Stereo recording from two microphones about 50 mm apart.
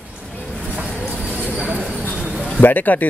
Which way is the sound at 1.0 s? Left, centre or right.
Right.